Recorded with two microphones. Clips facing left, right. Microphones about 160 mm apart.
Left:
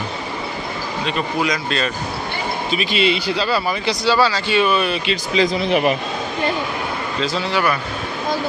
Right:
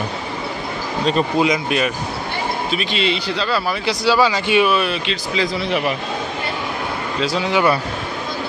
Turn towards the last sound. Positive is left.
turn(degrees=-15)  # may be behind; listen again after turning